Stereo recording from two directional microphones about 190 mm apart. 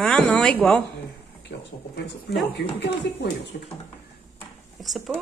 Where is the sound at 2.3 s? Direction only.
60° left (ahead or behind).